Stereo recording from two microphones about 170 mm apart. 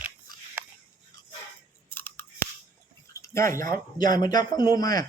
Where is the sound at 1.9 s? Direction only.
10° left (ahead or behind).